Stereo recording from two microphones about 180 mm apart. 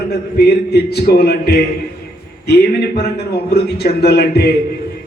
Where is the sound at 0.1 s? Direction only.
65° left (ahead or behind).